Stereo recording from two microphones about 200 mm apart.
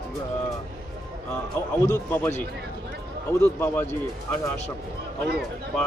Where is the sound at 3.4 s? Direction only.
10° left (ahead or behind).